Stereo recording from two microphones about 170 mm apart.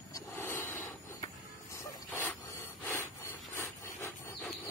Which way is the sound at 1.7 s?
15° left (ahead or behind).